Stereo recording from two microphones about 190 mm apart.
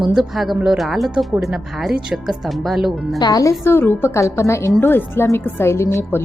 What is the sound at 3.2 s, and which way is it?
A woman's voice, 20° left (ahead or behind).